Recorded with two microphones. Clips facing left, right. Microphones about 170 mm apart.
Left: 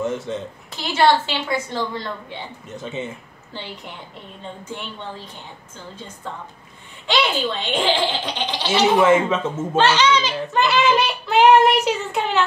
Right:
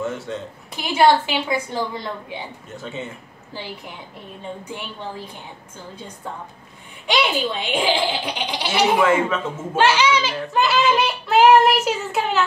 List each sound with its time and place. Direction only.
0.7 s speech: 10° right (ahead or behind)
2.8 s speech: 20° left (ahead or behind)
4.6 s speech: 10° right (ahead or behind)
9.0 s a man's voice: 20° left (ahead or behind)
9.8 s child singing: 10° right (ahead or behind)